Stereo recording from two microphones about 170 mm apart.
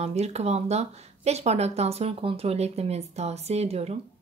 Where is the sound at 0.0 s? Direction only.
40° right (ahead or behind).